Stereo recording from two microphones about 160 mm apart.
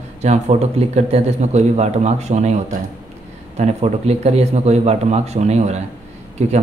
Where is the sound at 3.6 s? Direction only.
45° right (ahead or behind).